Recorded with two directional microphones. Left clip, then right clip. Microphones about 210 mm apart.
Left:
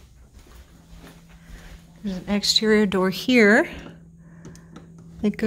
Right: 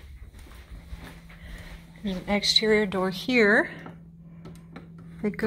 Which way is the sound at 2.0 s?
20° left (ahead or behind).